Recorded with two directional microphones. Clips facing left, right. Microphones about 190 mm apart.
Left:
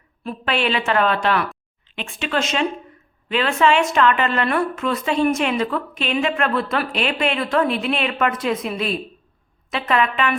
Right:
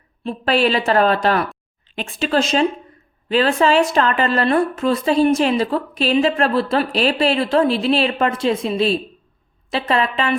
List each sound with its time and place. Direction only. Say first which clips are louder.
0.3 s speech: right 5 dB; 35° right (ahead or behind)